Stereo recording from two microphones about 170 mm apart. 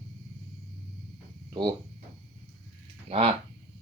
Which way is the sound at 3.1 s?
35° right (ahead or behind).